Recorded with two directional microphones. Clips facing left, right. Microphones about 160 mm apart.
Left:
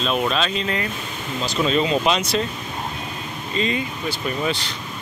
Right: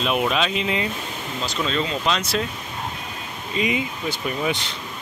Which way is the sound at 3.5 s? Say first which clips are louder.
Even; 15° right (ahead or behind).